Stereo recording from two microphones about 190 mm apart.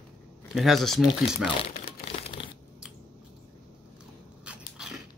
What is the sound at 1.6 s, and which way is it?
Crumpling, 30° left (ahead or behind).